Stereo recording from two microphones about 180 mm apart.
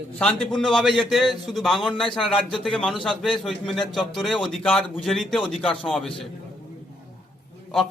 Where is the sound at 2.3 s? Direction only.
30° left (ahead or behind).